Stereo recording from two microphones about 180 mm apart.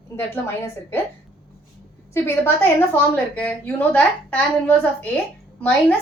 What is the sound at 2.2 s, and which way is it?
A woman's voice, 10° left (ahead or behind).